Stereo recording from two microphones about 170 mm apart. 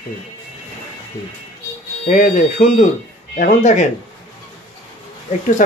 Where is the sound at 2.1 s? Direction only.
45° left (ahead or behind).